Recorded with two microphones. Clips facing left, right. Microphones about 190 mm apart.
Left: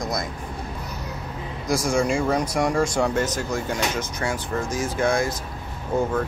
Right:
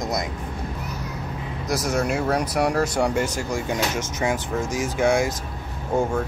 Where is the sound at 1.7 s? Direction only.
5° right (ahead or behind).